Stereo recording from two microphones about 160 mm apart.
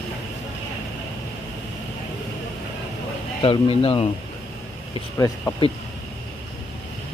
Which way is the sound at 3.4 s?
35° left (ahead or behind).